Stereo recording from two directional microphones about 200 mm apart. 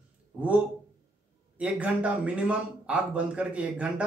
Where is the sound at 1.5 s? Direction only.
5° right (ahead or behind).